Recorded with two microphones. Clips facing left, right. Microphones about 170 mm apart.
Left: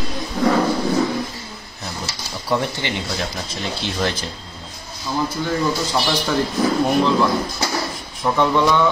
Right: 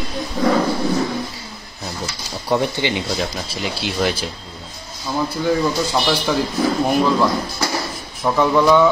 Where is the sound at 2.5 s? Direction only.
15° right (ahead or behind).